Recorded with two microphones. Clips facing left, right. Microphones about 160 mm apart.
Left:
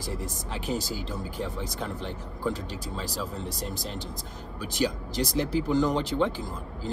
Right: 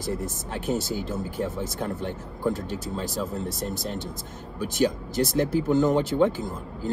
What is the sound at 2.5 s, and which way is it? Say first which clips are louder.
Speech: right 4 dB; 50° right (ahead or behind).